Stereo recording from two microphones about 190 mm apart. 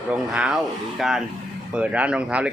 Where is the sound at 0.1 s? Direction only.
5° right (ahead or behind).